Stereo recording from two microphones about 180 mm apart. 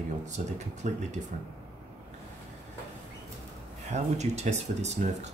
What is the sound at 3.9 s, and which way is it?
Speech, 40° right (ahead or behind).